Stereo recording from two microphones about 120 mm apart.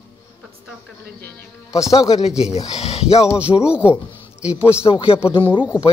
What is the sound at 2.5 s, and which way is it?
Speech, 60° left (ahead or behind).